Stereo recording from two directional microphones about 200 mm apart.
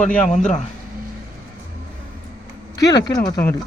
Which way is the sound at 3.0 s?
20° left (ahead or behind).